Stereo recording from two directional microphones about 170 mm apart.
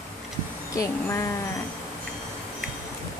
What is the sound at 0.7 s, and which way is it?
Speech, 15° left (ahead or behind).